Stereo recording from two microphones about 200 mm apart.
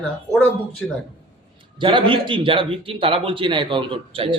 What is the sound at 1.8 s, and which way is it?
A man's voice, 25° right (ahead or behind).